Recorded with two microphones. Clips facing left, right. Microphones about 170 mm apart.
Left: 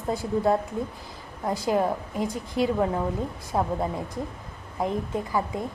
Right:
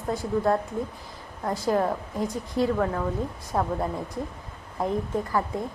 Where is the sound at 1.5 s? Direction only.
10° left (ahead or behind).